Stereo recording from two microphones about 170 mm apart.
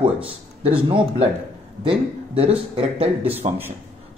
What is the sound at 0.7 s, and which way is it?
Speech, 30° right (ahead or behind).